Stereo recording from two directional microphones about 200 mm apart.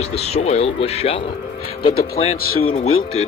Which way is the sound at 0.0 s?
30° left (ahead or behind).